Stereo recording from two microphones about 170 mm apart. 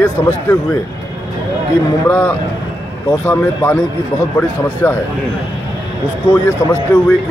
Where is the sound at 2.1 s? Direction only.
10° left (ahead or behind).